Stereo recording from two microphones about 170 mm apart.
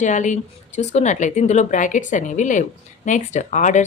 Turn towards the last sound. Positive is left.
turn(degrees=45)  # may be behind; listen again after turning